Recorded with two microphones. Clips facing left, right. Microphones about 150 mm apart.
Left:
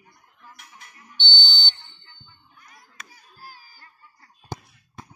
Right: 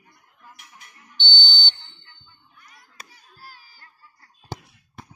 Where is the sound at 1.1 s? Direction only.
45° right (ahead or behind).